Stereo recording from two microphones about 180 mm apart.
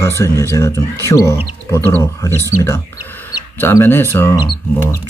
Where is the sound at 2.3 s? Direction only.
15° right (ahead or behind).